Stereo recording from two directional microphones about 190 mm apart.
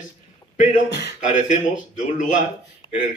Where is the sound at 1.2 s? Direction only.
40° left (ahead or behind).